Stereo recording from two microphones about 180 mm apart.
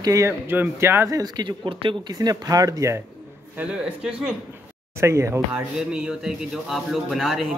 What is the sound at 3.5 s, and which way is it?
A man's voice, 5° right (ahead or behind).